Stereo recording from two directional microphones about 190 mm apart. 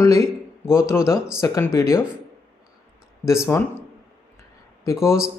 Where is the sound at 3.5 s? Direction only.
15° left (ahead or behind).